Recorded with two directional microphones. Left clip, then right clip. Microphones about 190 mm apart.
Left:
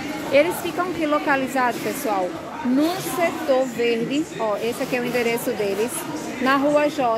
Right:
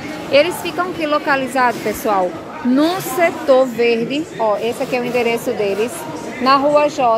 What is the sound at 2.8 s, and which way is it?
A woman's voice, 20° right (ahead or behind).